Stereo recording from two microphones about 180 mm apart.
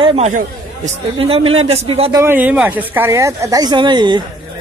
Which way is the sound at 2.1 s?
15° right (ahead or behind).